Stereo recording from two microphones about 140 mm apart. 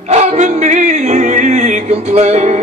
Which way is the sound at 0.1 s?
55° right (ahead or behind).